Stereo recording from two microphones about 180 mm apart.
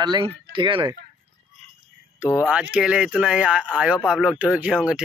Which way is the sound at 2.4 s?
5° right (ahead or behind).